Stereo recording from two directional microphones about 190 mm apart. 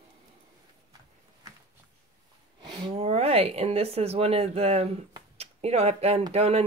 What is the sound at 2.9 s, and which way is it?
Speech, 35° right (ahead or behind).